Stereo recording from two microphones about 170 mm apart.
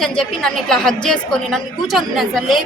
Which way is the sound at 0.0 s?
5° left (ahead or behind).